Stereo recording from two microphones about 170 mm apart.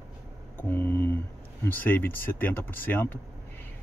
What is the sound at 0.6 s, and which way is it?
Speech, 10° left (ahead or behind).